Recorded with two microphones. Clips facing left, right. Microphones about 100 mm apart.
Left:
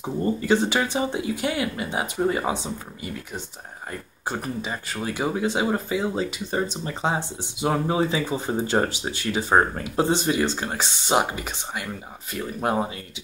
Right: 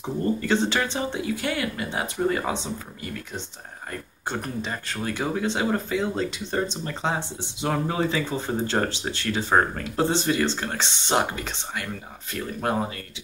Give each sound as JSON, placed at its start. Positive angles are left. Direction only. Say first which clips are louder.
{"t": 0.0, "sound": "speech", "louder": "left 1 dB", "side_deg": 10}
{"t": 4.3, "sound": "speech", "louder": "left 1 dB", "side_deg": 5}